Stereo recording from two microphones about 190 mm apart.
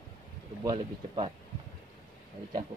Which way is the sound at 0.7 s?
30° right (ahead or behind).